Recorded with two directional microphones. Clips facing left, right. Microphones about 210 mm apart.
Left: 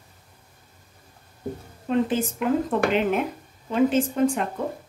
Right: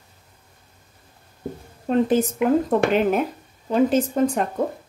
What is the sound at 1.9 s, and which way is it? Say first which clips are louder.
A woman's voice: right 4 dB; 40° right (ahead or behind).